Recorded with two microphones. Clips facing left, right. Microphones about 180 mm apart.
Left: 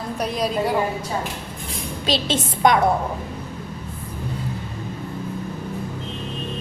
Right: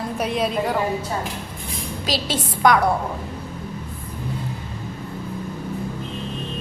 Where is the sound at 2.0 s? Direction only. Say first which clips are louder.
Left 3 dB; 25° left (ahead or behind).